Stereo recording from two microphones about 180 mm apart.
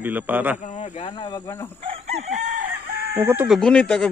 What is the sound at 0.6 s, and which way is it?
Speech, 40° left (ahead or behind).